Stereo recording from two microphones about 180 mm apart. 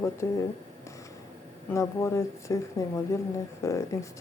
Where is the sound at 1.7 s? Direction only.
15° left (ahead or behind).